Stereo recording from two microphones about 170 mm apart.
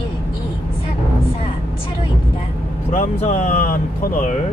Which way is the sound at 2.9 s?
50° left (ahead or behind).